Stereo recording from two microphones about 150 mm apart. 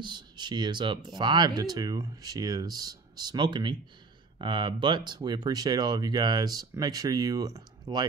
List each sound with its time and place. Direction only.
0.0 s speech: 30° right (ahead or behind)